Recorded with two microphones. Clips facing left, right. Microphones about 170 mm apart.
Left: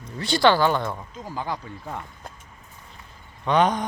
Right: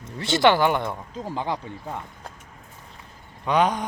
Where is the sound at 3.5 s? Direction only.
10° right (ahead or behind).